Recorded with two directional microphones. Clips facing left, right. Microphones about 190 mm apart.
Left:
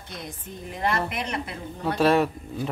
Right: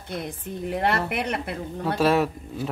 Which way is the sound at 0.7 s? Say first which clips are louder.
Right 2 dB; 65° right (ahead or behind).